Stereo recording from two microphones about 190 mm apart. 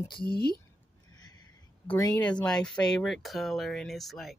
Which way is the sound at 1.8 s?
15° left (ahead or behind).